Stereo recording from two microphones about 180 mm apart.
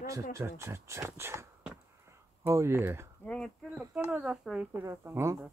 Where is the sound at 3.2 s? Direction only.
5° left (ahead or behind); by 5.3 s 15° right (ahead or behind).